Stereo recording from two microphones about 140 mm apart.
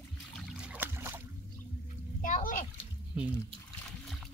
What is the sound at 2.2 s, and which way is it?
Splash, 75° left (ahead or behind).